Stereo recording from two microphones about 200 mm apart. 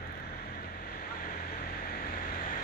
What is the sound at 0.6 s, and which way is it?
Vehicle, 50° left (ahead or behind).